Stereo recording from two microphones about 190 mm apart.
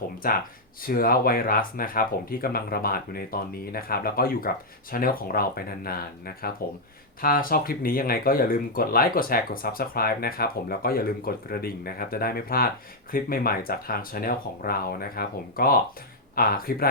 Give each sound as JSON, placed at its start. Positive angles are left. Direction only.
{"t": 0.8, "sound": "speech", "side_deg": 50}